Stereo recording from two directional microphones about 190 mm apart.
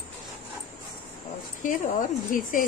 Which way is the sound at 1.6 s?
45° left (ahead or behind).